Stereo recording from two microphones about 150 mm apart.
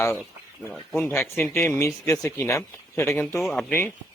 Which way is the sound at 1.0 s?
15° left (ahead or behind).